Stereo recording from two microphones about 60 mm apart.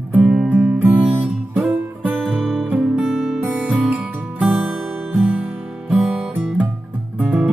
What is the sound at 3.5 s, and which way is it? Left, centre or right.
Music, right.